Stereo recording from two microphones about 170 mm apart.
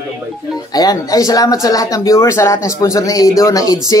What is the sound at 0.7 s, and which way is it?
Speech, 20° left (ahead or behind).